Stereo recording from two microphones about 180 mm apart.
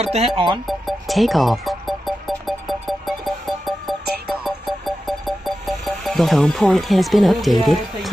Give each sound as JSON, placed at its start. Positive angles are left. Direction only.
{"t": 0.0, "sound": "speech", "side_deg": -35}
{"t": 0.7, "sound": "music", "side_deg": 0}